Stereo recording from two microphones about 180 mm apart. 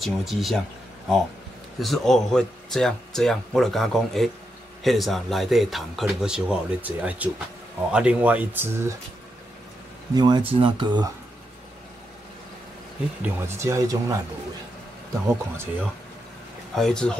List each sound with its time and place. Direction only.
0.0 s speech: centre (ahead or behind)
1.8 s speech: centre (ahead or behind)
10.1 s speech: 25° right (ahead or behind)
13.2 s speech: 15° right (ahead or behind)
15.2 s speech: 15° right (ahead or behind)
16.7 s speech: 5° left (ahead or behind)